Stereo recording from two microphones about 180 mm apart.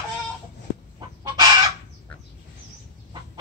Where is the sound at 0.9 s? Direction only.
25° right (ahead or behind).